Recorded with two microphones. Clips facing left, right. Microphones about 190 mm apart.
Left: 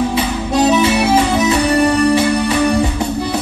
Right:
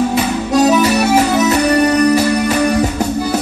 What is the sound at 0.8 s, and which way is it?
Music, 45° right (ahead or behind).